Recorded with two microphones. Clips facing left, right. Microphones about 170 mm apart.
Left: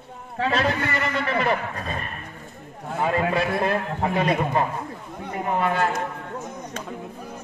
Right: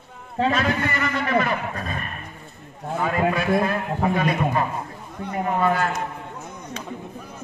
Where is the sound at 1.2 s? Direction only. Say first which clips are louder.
Right 2 dB; 30° left (ahead or behind).